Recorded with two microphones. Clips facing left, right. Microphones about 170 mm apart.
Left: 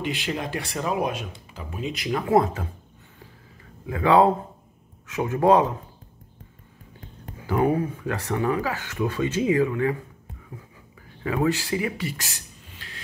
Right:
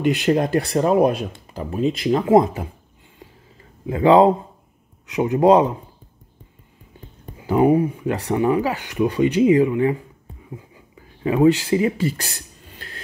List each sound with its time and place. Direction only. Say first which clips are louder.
0.0 s speech: right 10 dB; 50° right (ahead or behind)
0.6 s speech: right 10 dB; 35° right (ahead or behind); by 2.7 s 20° right (ahead or behind)
3.8 s speech: right 5 dB; 20° right (ahead or behind)
7.3 s speech: right 6 dB; 20° right (ahead or behind)
11.0 s a sound: right 7 dB; 20° right (ahead or behind); by 13.0 s 45° right (ahead or behind)